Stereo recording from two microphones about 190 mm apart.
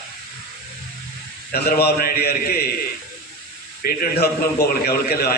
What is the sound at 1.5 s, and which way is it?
A man's voice, 55° left (ahead or behind).